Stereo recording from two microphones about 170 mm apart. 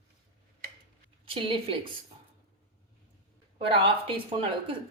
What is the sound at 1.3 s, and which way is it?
Speech, 30° right (ahead or behind).